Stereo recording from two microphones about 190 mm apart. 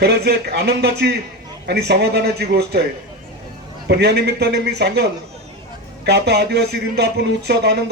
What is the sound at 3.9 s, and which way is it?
A man's voice, 60° right (ahead or behind).